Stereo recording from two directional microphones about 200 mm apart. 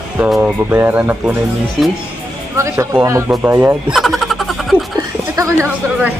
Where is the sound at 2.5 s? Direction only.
10° right (ahead or behind).